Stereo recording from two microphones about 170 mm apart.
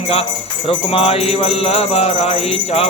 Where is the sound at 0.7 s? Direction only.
35° left (ahead or behind).